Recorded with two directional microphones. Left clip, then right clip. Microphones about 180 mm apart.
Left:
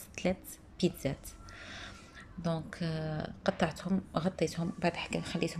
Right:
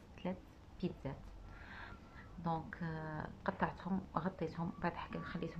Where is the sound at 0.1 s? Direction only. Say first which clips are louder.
Left 12 dB; 20° left (ahead or behind).